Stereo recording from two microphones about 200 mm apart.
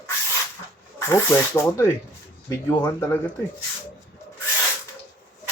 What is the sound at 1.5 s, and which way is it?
Speech, 15° left (ahead or behind).